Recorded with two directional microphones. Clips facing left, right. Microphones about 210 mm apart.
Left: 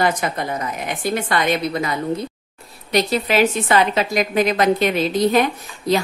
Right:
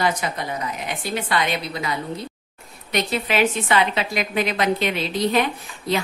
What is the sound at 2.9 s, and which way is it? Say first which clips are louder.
A woman's voice: left 5 dB; 35° left (ahead or behind).